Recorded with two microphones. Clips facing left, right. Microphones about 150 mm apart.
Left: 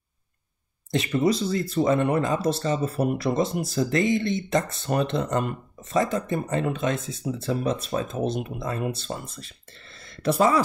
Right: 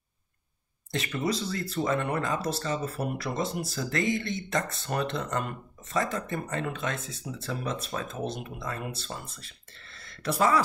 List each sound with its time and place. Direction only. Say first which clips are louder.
0.9 s speech: left 7 dB; 20° left (ahead or behind)